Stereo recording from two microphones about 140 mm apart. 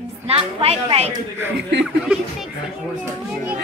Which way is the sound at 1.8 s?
5° right (ahead or behind).